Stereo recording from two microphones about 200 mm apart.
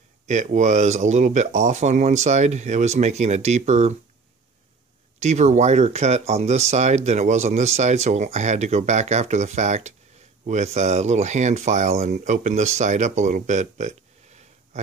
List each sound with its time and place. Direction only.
0.3 s speech: 35° right (ahead or behind)
5.2 s speech: 35° right (ahead or behind)